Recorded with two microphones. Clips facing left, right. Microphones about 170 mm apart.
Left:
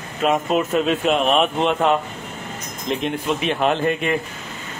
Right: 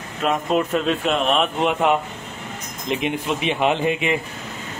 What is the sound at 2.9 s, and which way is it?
Speech, 10° right (ahead or behind).